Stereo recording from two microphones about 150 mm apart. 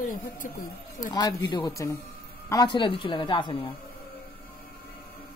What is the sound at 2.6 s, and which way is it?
Speech, 35° left (ahead or behind).